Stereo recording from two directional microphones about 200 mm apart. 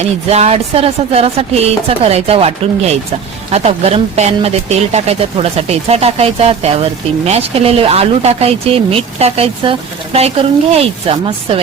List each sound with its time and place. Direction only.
0.0 s a woman's voice: 30° right (ahead or behind)